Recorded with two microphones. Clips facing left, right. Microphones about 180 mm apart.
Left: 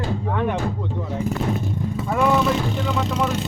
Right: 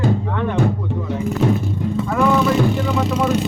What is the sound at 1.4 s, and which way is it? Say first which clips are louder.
Vehicle: right 9 dB; 90° right.